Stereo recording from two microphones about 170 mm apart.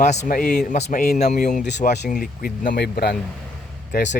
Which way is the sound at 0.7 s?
45° left (ahead or behind).